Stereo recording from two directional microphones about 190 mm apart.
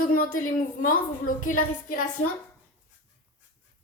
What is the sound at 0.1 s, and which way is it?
A woman's voice, 45° left (ahead or behind).